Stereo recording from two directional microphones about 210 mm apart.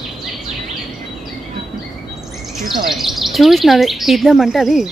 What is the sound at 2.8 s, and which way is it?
Speech, centre (ahead or behind).